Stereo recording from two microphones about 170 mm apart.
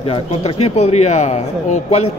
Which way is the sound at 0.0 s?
35° left (ahead or behind).